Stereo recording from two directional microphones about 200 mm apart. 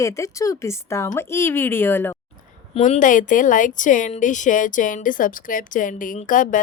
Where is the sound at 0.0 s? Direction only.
15° left (ahead or behind).